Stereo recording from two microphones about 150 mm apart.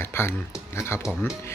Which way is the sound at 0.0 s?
15° left (ahead or behind).